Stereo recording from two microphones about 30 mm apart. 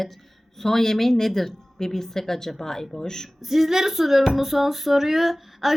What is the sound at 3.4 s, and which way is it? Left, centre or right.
A woman's voice, centre.